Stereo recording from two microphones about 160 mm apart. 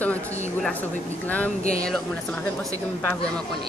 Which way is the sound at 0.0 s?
5° left (ahead or behind).